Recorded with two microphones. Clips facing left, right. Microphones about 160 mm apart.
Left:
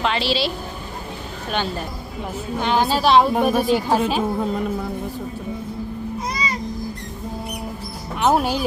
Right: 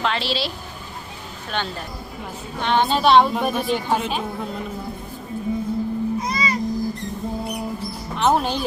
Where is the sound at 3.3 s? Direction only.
45° left (ahead or behind).